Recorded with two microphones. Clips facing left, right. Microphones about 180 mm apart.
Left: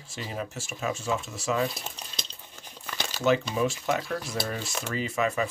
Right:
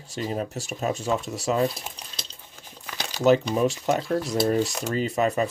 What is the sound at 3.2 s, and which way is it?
Speech, 35° right (ahead or behind).